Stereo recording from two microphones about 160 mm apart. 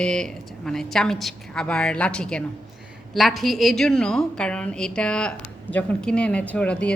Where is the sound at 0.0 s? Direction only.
5° left (ahead or behind).